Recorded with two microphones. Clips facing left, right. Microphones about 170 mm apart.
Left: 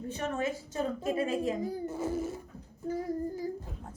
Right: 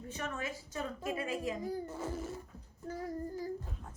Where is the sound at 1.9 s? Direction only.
10° left (ahead or behind).